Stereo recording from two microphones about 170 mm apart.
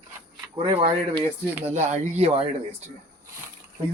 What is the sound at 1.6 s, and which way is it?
Speech, 40° right (ahead or behind).